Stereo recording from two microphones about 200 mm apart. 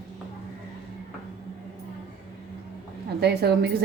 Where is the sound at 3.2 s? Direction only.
55° right (ahead or behind).